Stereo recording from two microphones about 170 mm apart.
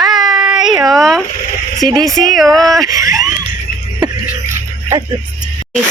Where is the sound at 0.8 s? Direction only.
Centre (ahead or behind).